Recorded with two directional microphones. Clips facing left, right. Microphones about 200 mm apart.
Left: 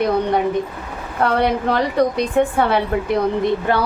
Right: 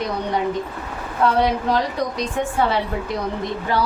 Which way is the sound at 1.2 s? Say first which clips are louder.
Left 1 dB; 60° left (ahead or behind).